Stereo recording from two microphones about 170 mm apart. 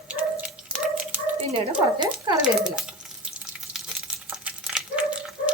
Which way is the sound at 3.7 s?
5° right (ahead or behind).